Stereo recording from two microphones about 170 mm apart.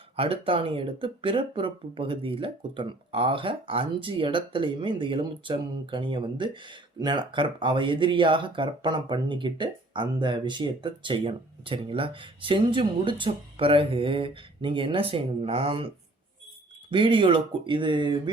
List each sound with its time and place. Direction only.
0.2 s speech: 30° right (ahead or behind)
16.9 s speech: 30° right (ahead or behind)